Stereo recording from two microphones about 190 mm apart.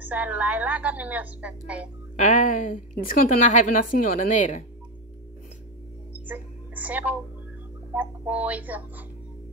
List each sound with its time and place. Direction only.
0.0 s a woman's voice: 10° right (ahead or behind)
2.1 s a woman's voice: 45° left (ahead or behind)
6.2 s music: 10° right (ahead or behind)
7.9 s a woman's voice: 10° right (ahead or behind)